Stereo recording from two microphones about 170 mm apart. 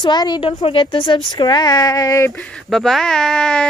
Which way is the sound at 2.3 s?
5° left (ahead or behind).